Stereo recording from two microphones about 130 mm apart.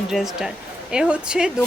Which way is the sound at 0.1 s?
5° right (ahead or behind).